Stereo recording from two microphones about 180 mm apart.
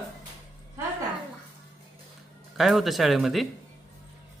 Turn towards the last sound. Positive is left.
turn(degrees=0)  # may be behind; listen again after turning